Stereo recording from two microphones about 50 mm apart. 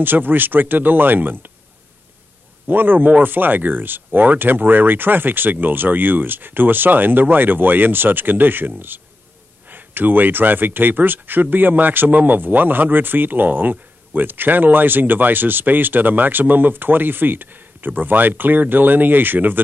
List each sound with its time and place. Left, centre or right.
0.0 s speech: right
2.6 s speech: right